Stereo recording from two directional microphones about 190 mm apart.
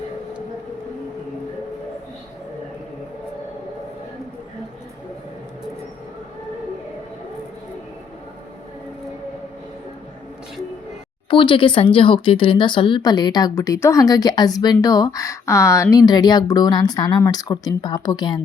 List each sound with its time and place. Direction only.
11.3 s speech: 25° left (ahead or behind)